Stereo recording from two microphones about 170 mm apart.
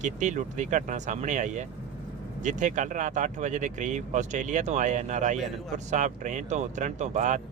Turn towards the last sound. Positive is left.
turn(degrees=-45)  # may be behind; listen again after turning